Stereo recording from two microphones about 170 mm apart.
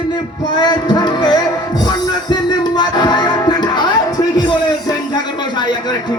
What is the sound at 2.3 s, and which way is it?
Music, 25° left (ahead or behind).